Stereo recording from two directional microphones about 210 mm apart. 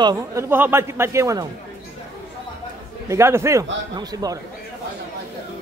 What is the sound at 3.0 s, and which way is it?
A man's voice, 15° right (ahead or behind).